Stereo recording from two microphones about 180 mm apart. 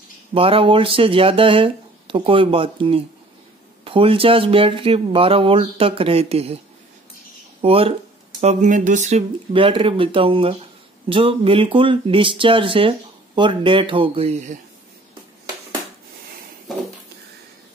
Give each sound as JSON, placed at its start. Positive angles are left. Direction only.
{"t": 0.3, "sound": "speech", "side_deg": -30}
{"t": 7.6, "sound": "speech", "side_deg": -30}